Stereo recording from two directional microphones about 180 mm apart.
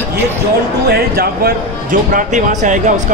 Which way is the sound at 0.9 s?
60° right (ahead or behind).